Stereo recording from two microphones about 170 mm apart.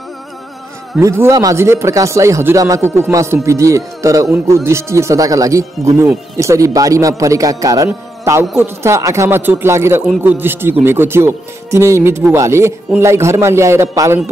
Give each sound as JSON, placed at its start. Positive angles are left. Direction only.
{"t": 0.9, "sound": "speech", "side_deg": -15}